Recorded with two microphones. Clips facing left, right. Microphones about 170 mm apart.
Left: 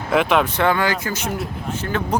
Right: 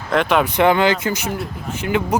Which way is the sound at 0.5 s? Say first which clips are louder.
Right 4 dB; 20° right (ahead or behind).